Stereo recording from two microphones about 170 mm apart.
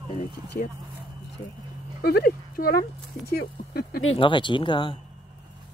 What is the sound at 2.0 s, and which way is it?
Speech, 70° left (ahead or behind).